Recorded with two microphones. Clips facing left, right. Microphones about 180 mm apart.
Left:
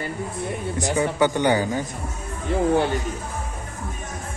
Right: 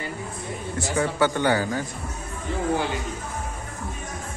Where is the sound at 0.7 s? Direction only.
15° left (ahead or behind).